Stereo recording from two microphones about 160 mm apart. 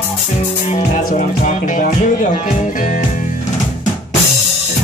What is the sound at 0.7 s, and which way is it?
Speech, 50° left (ahead or behind).